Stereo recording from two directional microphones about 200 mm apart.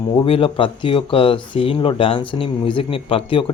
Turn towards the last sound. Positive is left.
turn(degrees=25)  # may be behind; listen again after turning